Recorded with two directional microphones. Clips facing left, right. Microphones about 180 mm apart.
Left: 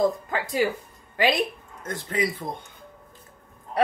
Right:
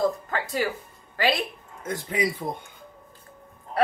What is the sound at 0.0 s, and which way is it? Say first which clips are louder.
Speech: left 2 dB; 15° left (ahead or behind).